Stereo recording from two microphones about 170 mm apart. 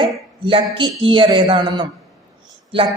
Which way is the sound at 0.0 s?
30° right (ahead or behind).